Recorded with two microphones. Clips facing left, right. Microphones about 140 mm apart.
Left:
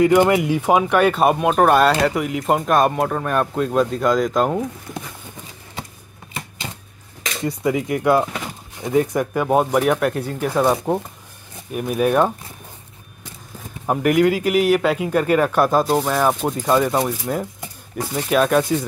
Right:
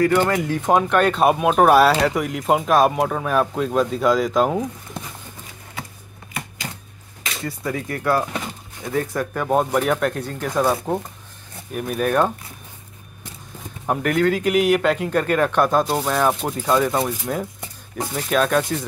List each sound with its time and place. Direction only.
0.0 s speech: 15° left (ahead or behind); by 4.6 s centre (ahead or behind)
7.4 s speech: 15° left (ahead or behind)
13.8 s speech: 10° left (ahead or behind)